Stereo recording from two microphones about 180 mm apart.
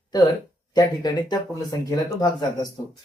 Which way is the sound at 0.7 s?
20° left (ahead or behind).